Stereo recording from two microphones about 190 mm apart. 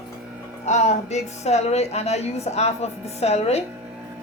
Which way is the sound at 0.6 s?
35° left (ahead or behind).